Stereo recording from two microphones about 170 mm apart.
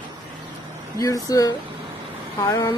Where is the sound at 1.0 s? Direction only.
20° left (ahead or behind).